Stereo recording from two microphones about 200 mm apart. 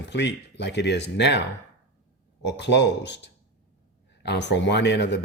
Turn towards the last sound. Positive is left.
turn(degrees=60)  # may be behind; listen again after turning